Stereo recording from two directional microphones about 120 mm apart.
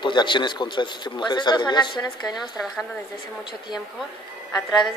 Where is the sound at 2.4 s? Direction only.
Centre (ahead or behind).